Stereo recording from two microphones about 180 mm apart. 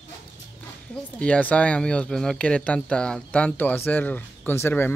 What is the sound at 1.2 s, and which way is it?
Speech, 5° left (ahead or behind).